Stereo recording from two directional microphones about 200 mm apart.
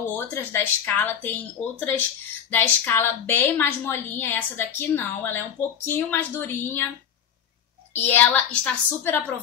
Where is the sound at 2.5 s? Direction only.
10° left (ahead or behind).